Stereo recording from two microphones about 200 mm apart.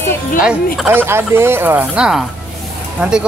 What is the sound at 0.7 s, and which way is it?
Speech, 10° right (ahead or behind).